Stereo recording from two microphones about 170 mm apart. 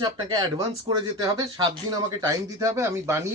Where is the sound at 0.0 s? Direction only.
25° right (ahead or behind).